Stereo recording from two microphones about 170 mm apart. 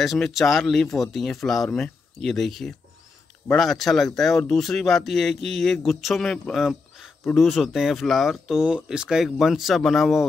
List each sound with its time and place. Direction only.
0.0 s speech: centre (ahead or behind)